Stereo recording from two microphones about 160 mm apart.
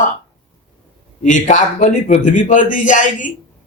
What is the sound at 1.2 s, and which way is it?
Speech, 50° left (ahead or behind).